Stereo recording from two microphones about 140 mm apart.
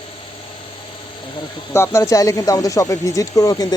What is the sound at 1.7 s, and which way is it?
Speech, 20° left (ahead or behind).